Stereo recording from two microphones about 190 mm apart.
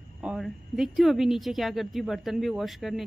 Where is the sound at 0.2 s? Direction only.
5° right (ahead or behind).